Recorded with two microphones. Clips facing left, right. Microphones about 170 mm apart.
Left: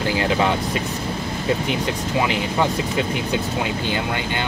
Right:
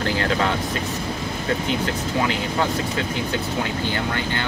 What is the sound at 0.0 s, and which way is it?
Speech, 15° left (ahead or behind).